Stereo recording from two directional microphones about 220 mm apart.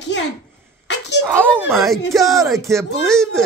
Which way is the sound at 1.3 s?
10° right (ahead or behind).